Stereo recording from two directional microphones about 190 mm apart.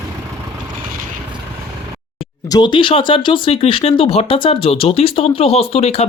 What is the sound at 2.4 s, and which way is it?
Speech, 20° left (ahead or behind).